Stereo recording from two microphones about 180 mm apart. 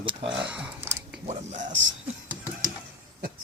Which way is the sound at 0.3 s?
5° right (ahead or behind).